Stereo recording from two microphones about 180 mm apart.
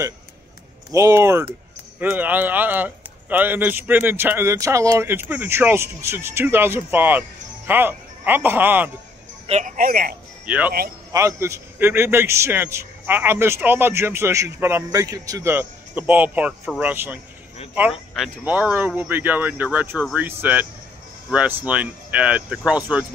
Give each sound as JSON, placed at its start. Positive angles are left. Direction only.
{"t": 0.9, "sound": "a man's voice", "side_deg": -15}
{"t": 9.5, "sound": "a man's voice", "side_deg": -45}
{"t": 10.4, "sound": "a man's voice", "side_deg": -10}